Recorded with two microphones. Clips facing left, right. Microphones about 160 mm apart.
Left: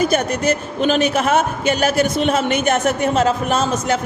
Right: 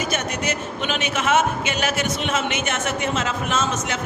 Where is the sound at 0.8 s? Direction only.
40° left (ahead or behind).